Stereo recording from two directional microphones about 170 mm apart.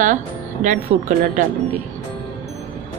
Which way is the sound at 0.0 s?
50° right (ahead or behind).